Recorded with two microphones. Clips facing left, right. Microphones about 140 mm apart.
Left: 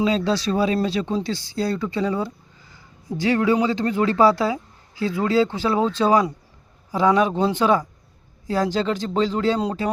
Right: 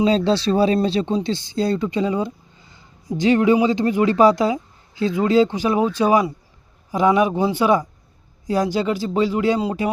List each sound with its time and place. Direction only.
0.0 s speech: 30° right (ahead or behind); by 9.9 s 10° right (ahead or behind)